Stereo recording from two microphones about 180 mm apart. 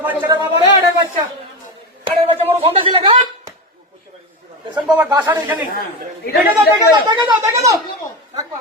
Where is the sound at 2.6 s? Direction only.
30° right (ahead or behind).